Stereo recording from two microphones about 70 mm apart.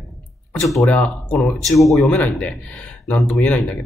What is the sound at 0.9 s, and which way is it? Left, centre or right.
Speech, left.